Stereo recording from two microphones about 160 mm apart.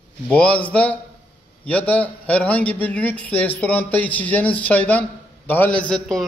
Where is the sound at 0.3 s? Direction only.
5° left (ahead or behind).